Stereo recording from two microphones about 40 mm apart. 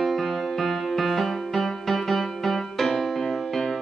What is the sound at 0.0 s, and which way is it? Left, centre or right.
Music, centre.